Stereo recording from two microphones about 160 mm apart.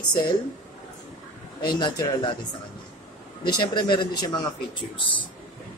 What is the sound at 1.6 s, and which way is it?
Speech, 25° left (ahead or behind).